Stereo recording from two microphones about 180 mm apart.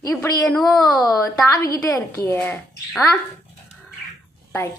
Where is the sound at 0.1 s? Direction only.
10° left (ahead or behind).